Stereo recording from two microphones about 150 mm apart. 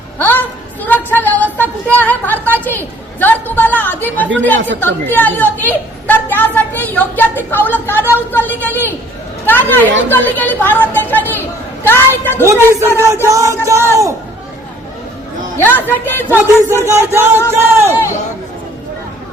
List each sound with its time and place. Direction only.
0.2 s a sound: 10° left (ahead or behind)
2.0 s a woman's voice: 10° left (ahead or behind)
12.5 s music: 15° right (ahead or behind)
15.5 s a woman's voice: 15° left (ahead or behind)
16.8 s music: 20° right (ahead or behind)
17.8 s a woman's voice: 20° left (ahead or behind)